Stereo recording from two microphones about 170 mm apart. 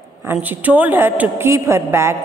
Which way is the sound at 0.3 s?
10° right (ahead or behind).